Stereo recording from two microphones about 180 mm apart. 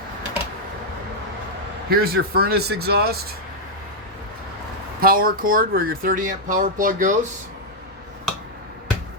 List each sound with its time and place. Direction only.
1.9 s speech: 60° right (ahead or behind)
4.9 s speech: 55° right (ahead or behind)